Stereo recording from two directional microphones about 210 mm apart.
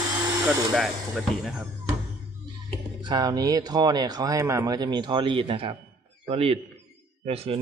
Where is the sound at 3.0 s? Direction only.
20° right (ahead or behind).